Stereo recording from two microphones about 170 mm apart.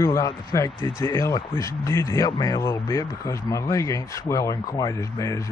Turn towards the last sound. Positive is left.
turn(degrees=20)  # may be behind; listen again after turning